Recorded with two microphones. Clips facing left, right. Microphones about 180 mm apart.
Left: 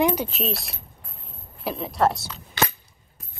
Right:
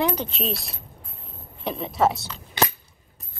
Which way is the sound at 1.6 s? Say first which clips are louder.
Even; centre (ahead or behind).